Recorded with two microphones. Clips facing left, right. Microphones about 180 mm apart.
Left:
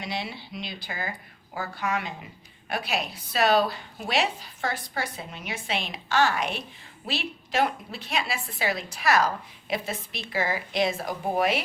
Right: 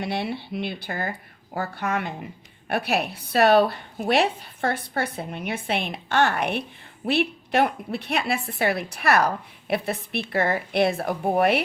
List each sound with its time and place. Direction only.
0.0 s a woman's voice: 55° right (ahead or behind)